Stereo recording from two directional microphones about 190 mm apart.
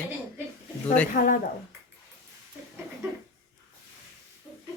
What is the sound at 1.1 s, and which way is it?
Speech, 45° left (ahead or behind).